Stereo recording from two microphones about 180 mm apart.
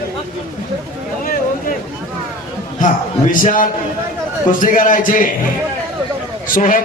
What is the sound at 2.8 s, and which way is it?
A man's voice, 45° left (ahead or behind).